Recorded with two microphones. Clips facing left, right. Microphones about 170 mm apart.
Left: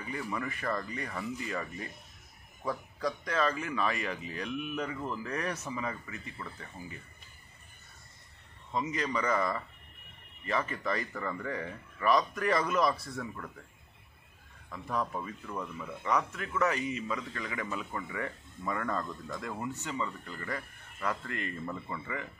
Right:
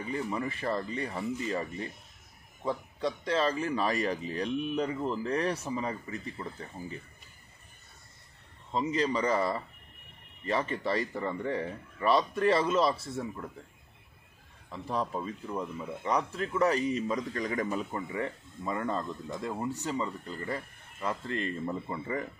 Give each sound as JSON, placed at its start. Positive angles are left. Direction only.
{"t": 0.0, "sound": "speech", "side_deg": -25}
{"t": 8.7, "sound": "speech", "side_deg": -30}
{"t": 14.7, "sound": "speech", "side_deg": -25}
{"t": 18.0, "sound": "speech", "side_deg": -25}